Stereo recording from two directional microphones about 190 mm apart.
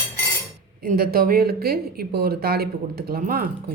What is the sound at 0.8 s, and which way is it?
Speech, 50° right (ahead or behind).